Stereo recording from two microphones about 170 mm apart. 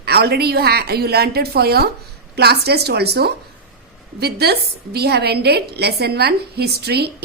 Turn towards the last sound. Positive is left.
turn(degrees=-70)  # may be behind; listen again after turning